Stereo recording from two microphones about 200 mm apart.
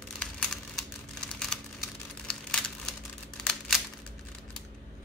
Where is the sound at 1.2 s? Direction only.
5° left (ahead or behind).